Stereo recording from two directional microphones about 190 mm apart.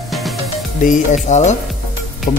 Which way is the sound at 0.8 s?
40° left (ahead or behind).